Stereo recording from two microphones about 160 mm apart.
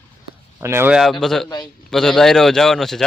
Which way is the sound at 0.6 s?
15° right (ahead or behind).